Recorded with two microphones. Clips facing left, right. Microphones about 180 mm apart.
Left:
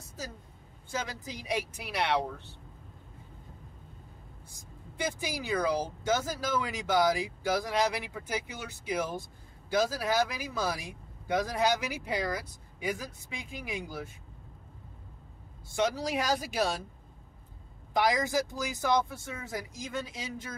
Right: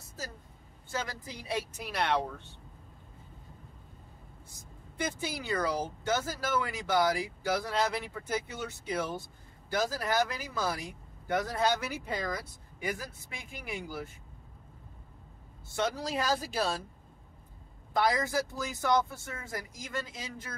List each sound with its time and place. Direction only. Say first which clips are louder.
0.9 s speech: left 1 dB; 15° left (ahead or behind)
5.4 s speech: left 2 dB; 15° left (ahead or behind)
15.7 s speech: left 3 dB; 15° left (ahead or behind)
17.9 s speech: left 1 dB; 15° left (ahead or behind)